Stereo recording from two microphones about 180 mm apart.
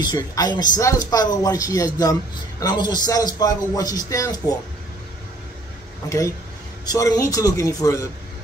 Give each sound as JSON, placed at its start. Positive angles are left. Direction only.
{"t": 0.0, "sound": "a man's voice", "side_deg": 25}
{"t": 6.0, "sound": "a man's voice", "side_deg": 15}